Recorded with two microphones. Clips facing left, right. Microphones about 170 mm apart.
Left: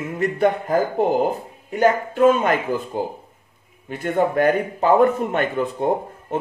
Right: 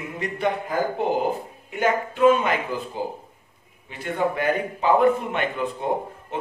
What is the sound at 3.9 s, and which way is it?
Speech, 50° left (ahead or behind).